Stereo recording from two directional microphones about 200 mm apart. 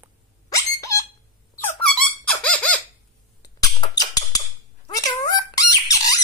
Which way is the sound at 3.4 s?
20° left (ahead or behind).